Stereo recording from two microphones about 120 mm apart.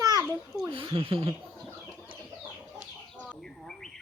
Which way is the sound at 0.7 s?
50° right (ahead or behind).